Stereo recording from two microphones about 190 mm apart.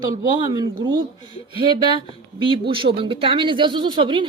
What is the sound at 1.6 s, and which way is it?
Speech, 25° right (ahead or behind).